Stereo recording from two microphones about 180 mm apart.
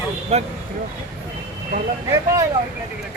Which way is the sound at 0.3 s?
35° right (ahead or behind).